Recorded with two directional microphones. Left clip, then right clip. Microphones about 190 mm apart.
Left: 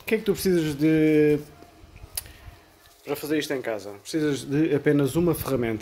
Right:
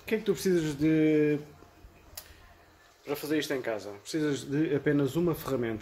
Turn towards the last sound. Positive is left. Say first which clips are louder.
# left 6 dB
turn(degrees=30)  # may be behind; listen again after turning